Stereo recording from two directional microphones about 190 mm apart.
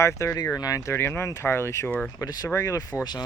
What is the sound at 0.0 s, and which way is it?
Speech, 15° left (ahead or behind).